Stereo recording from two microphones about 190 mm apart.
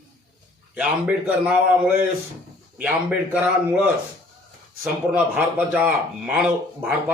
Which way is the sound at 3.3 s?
10° right (ahead or behind).